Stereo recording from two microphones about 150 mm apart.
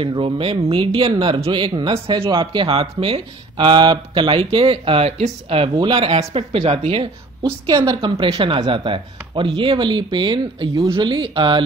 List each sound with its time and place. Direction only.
0.0 s speech: 35° right (ahead or behind)
7.6 s a woman's voice: 25° right (ahead or behind)